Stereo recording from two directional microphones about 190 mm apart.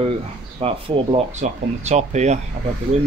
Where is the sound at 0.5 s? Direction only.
30° right (ahead or behind).